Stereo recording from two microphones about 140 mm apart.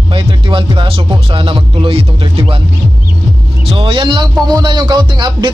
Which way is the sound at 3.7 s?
40° right (ahead or behind).